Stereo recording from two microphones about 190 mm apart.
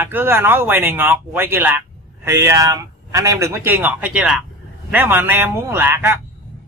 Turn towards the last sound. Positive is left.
turn(degrees=-10)  # may be behind; listen again after turning